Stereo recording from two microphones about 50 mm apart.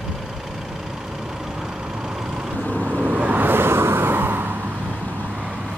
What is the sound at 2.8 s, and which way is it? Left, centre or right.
Vehicle, right.